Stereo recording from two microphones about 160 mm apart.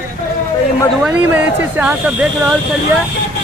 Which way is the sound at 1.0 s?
10° right (ahead or behind).